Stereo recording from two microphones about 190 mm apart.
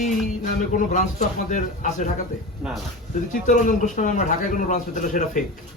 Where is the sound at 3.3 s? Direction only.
40° left (ahead or behind).